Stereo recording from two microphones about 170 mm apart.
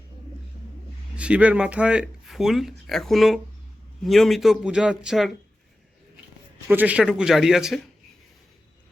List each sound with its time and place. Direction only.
1.1 s speech: 5° right (ahead or behind)
6.7 s speech: 10° right (ahead or behind)